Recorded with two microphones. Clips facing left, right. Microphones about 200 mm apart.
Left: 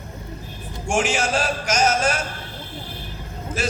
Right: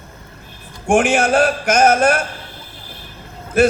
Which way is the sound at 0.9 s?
55° right (ahead or behind).